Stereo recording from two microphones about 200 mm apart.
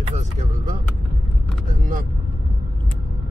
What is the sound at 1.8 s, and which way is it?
Speech, 45° right (ahead or behind).